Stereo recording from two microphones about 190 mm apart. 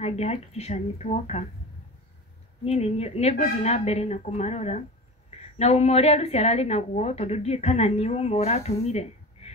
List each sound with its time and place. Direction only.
0.0 s a woman's voice: 35° left (ahead or behind)
2.6 s a woman's voice: 35° left (ahead or behind)